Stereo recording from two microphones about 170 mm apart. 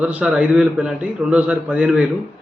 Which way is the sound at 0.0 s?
5° right (ahead or behind).